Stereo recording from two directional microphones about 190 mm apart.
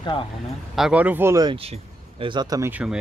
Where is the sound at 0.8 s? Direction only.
5° right (ahead or behind); by 2.7 s 20° right (ahead or behind).